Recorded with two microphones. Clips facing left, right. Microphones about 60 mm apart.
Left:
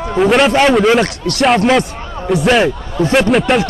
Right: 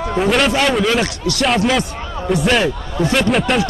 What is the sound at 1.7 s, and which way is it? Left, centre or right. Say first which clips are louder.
Speech: left 5 dB; centre.